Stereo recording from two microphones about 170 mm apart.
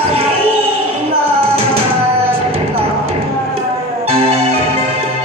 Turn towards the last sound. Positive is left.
turn(degrees=-35)  # may be behind; listen again after turning